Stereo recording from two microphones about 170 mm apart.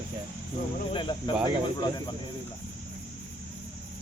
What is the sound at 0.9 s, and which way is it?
Speech, 30° left (ahead or behind).